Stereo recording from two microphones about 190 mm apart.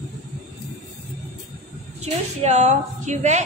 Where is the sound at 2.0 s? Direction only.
35° right (ahead or behind).